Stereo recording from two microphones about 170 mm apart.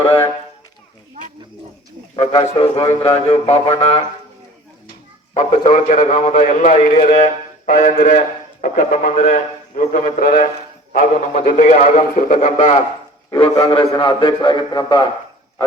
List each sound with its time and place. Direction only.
2.1 s a sound: 35° left (ahead or behind)
5.3 s a man's voice: 45° left (ahead or behind)
13.5 s a man's voice: 25° left (ahead or behind)